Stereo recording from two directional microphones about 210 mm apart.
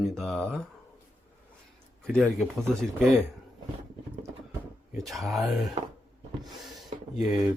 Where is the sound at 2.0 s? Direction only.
Centre (ahead or behind).